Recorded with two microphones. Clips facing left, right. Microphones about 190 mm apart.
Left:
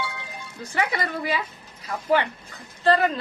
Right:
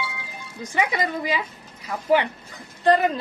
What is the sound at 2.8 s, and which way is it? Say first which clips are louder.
Speech: right 2 dB; 15° right (ahead or behind).